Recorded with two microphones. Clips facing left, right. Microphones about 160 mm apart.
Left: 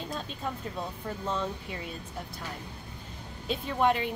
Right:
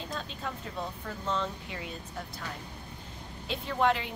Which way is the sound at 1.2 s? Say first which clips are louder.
Even; 10° left (ahead or behind).